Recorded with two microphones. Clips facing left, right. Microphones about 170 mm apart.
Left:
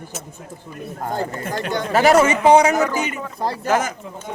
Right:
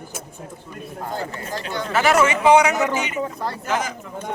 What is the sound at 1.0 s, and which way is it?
Speech, 50° left (ahead or behind).